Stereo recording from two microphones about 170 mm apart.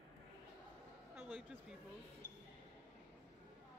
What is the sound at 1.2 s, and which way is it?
Speech, 5° right (ahead or behind).